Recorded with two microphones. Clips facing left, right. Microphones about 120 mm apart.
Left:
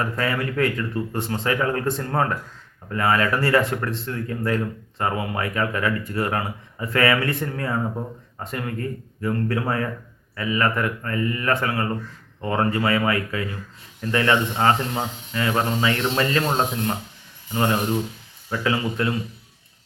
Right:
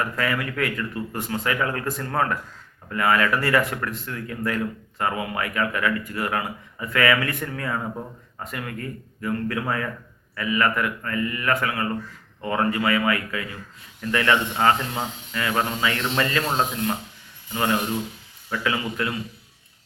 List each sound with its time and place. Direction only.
0.0 s speech: 30° left (ahead or behind)